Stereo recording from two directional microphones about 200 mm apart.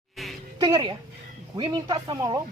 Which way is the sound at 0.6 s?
20° right (ahead or behind).